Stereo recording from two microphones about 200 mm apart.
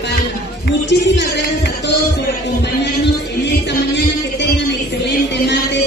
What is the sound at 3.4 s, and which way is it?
Music, 60° left (ahead or behind).